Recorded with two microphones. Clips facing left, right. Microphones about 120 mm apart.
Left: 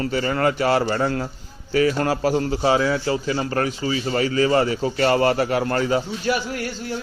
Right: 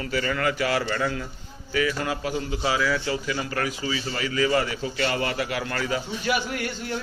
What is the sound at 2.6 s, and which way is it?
A man's voice, 30° left (ahead or behind).